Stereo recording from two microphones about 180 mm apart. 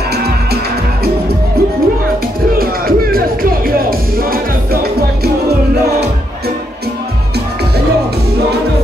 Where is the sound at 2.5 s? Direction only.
55° right (ahead or behind).